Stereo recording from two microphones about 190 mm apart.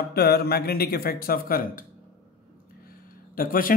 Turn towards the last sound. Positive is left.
turn(degrees=50)  # may be behind; listen again after turning